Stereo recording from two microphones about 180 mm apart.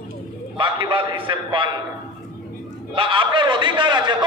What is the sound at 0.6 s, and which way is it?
A man's voice, 30° right (ahead or behind).